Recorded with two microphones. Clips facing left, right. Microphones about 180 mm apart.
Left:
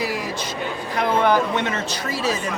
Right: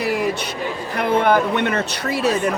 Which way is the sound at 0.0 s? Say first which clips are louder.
Right 5 dB; 60° right (ahead or behind).